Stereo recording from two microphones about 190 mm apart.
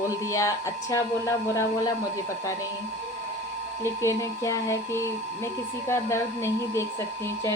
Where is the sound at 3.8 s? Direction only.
15° left (ahead or behind).